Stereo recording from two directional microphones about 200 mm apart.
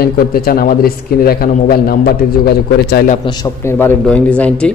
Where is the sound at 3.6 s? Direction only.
10° left (ahead or behind).